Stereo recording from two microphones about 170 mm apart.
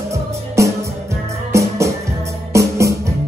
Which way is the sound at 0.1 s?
15° right (ahead or behind).